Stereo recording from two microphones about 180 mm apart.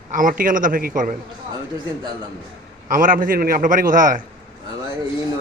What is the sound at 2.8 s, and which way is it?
A man's voice, 50° right (ahead or behind).